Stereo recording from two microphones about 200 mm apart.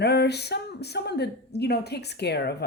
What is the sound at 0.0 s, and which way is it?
Speech, 55° left (ahead or behind).